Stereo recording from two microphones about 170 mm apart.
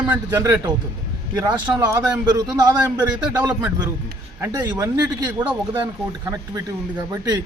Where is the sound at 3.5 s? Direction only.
10° right (ahead or behind).